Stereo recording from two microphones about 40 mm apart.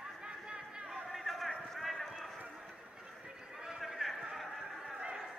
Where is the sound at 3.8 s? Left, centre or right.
Centre.